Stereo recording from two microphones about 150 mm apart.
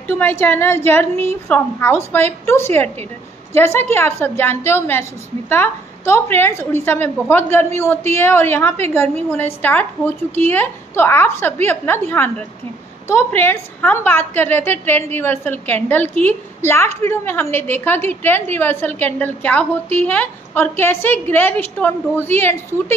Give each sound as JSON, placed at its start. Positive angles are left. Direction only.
{"t": 0.0, "sound": "a woman's voice", "side_deg": 15}